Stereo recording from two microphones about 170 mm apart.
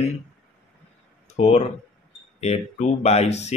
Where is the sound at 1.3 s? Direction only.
40° left (ahead or behind).